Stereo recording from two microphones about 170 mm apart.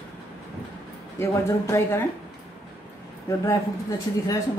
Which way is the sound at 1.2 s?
15° left (ahead or behind).